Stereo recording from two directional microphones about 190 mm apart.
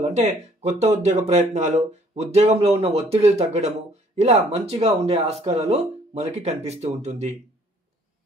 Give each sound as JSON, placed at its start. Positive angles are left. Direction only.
{"t": 0.0, "sound": "speech", "side_deg": -35}